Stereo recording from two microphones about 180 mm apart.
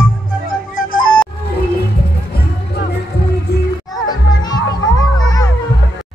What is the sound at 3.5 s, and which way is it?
Music, 65° left (ahead or behind).